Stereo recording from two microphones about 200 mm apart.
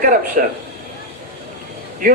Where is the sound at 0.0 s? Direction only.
45° right (ahead or behind).